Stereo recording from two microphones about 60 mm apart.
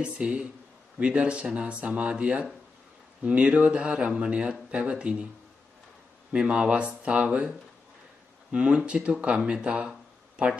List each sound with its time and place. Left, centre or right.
0.0 s speech: right
6.3 s speech: centre